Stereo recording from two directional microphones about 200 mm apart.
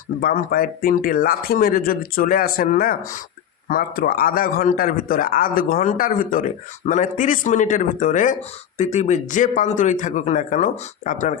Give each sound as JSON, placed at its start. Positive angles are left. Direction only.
{"t": 0.2, "sound": "speech", "side_deg": 45}